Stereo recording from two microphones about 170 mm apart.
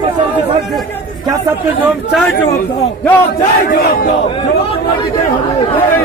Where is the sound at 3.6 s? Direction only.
55° left (ahead or behind).